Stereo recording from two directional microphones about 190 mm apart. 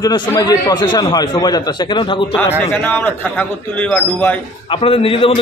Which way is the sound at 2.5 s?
10° left (ahead or behind).